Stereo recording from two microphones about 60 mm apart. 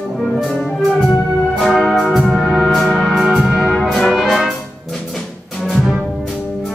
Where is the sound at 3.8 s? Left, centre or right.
Centre.